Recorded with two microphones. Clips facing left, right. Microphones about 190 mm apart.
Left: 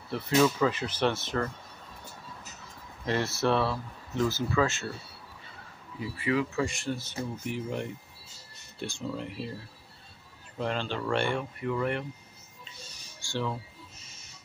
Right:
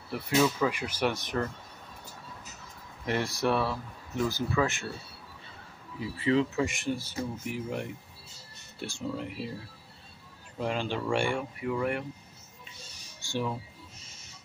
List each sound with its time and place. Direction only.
0.1 s speech: 10° right (ahead or behind)
3.1 s speech: 15° right (ahead or behind)
5.9 s speech: 25° right (ahead or behind); by 9.5 s 10° right (ahead or behind)
10.6 s speech: 10° right (ahead or behind)
13.2 s bird: 15° right (ahead or behind)